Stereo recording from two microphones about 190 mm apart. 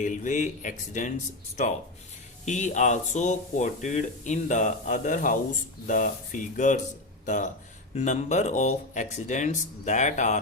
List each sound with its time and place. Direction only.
0.0 s speech: 40° left (ahead or behind)
2.4 s speech: 40° left (ahead or behind)